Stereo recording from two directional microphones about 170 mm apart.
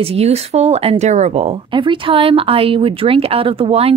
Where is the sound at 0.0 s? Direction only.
35° right (ahead or behind).